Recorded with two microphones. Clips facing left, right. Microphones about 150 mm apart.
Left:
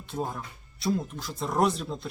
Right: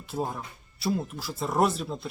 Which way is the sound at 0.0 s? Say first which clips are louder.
Right 1 dB; 5° right (ahead or behind).